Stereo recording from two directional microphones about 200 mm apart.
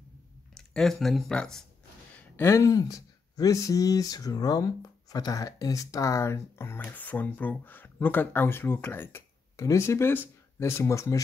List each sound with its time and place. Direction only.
0.6 s speech: centre (ahead or behind)